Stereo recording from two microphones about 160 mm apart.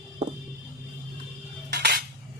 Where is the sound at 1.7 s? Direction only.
90° right.